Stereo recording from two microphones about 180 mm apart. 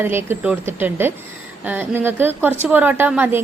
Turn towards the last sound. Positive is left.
turn(degrees=-10)  # may be behind; listen again after turning